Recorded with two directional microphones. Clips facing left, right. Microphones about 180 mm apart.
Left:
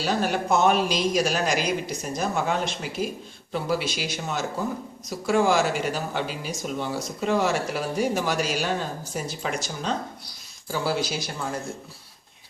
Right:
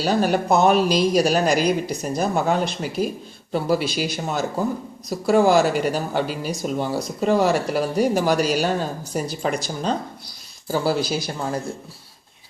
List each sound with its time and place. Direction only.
0.0 s speech: 40° right (ahead or behind)